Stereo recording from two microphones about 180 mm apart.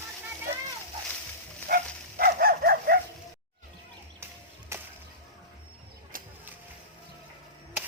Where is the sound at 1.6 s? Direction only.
55° right (ahead or behind).